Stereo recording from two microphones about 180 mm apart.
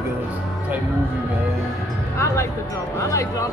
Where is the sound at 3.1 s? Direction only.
15° left (ahead or behind).